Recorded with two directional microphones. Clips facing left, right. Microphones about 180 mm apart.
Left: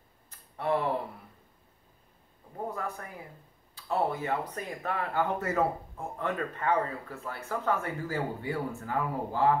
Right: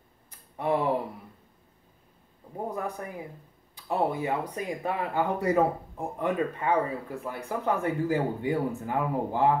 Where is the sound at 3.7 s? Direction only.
15° right (ahead or behind).